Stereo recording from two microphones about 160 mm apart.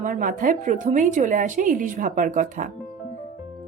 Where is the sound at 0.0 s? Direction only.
55° right (ahead or behind).